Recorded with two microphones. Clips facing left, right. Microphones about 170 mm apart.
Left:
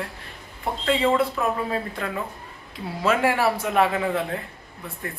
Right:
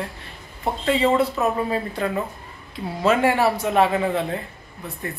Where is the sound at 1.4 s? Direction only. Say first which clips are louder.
Right 3 dB; 5° right (ahead or behind).